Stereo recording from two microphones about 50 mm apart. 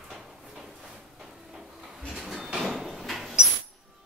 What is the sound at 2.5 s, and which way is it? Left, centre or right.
Drawer open or close, centre.